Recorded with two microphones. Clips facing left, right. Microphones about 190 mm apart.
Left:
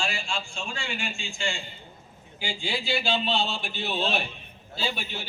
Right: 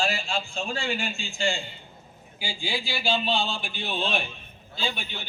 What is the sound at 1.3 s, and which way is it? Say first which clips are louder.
Speech: right 6 dB; 35° right (ahead or behind).